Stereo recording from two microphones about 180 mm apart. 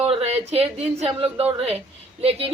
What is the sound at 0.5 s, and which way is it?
Speech, 35° right (ahead or behind).